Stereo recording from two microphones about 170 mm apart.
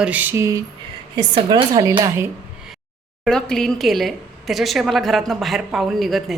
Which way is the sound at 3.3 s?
5° left (ahead or behind).